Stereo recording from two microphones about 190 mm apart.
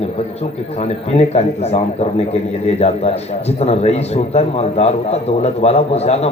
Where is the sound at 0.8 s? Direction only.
35° left (ahead or behind).